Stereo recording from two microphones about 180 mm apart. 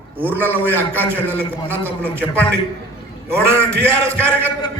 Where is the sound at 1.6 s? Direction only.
10° right (ahead or behind).